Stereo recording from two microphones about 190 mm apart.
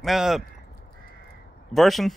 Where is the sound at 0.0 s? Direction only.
Centre (ahead or behind).